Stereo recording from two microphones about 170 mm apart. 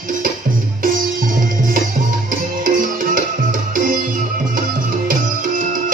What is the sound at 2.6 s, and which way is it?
Music, 55° right (ahead or behind).